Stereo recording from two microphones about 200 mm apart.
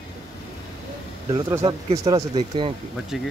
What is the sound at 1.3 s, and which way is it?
Speech, 20° right (ahead or behind).